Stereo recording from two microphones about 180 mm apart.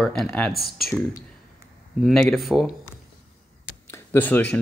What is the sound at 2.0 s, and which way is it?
Speech, centre (ahead or behind).